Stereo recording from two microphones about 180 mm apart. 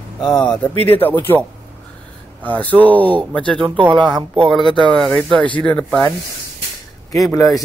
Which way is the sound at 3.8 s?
25° right (ahead or behind).